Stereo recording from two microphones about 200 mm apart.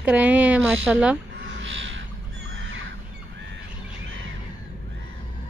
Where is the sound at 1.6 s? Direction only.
65° right (ahead or behind).